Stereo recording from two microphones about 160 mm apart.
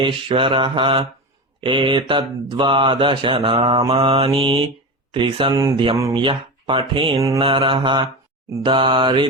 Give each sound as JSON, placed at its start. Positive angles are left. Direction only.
{"t": 0.0, "sound": "mantra", "side_deg": -30}